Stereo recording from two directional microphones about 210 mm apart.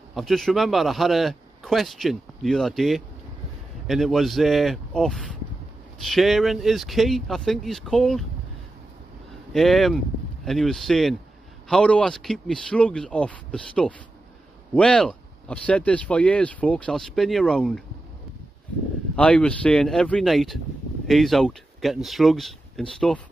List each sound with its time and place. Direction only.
0.1 s speech: centre (ahead or behind)
9.5 s speech: centre (ahead or behind)
19.1 s speech: 5° left (ahead or behind)